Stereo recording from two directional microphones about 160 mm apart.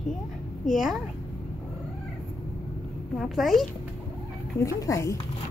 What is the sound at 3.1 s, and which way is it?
Speech, centre (ahead or behind).